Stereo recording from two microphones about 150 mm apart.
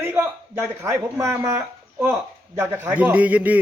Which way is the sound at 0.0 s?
15° right (ahead or behind).